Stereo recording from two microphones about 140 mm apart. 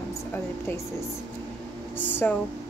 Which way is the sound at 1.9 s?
15° left (ahead or behind).